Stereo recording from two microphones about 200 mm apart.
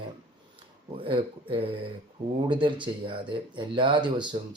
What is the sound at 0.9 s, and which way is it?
Speech, 25° right (ahead or behind).